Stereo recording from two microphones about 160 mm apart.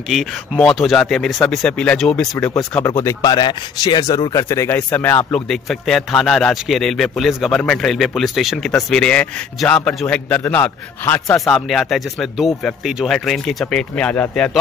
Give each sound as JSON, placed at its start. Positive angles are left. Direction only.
{"t": 0.1, "sound": "speech", "side_deg": 0}
{"t": 2.3, "sound": "speech", "side_deg": 15}
{"t": 11.3, "sound": "speech", "side_deg": 0}